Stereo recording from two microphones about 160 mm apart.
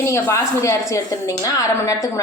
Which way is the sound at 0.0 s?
15° left (ahead or behind).